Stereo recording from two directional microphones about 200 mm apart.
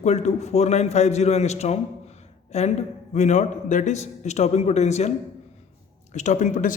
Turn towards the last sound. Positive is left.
turn(degrees=40)  # may be behind; listen again after turning